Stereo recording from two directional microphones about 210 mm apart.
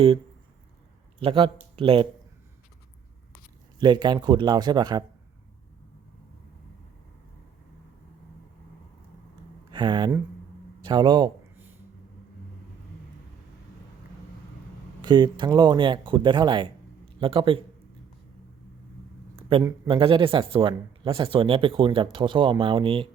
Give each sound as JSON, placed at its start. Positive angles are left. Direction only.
{"t": 1.2, "sound": "speech", "side_deg": -25}
{"t": 3.8, "sound": "speech", "side_deg": -20}
{"t": 9.7, "sound": "speech", "side_deg": -20}
{"t": 10.8, "sound": "a sound", "side_deg": -20}
{"t": 15.0, "sound": "speech", "side_deg": -20}
{"t": 19.9, "sound": "speech", "side_deg": -25}